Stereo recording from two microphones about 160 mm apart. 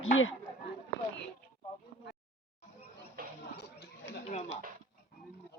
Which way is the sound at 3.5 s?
90° left.